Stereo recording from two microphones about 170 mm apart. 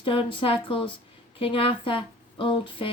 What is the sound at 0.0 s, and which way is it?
Speech, 30° left (ahead or behind).